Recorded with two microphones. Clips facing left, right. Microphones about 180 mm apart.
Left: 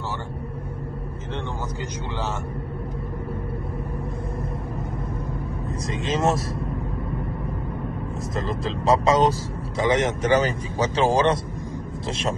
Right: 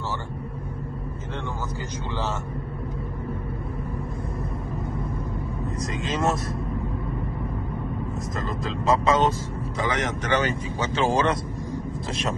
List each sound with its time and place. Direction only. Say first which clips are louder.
6.0 s speech: left 3 dB; 30° left (ahead or behind)
8.4 s speech: left 4 dB; 30° left (ahead or behind)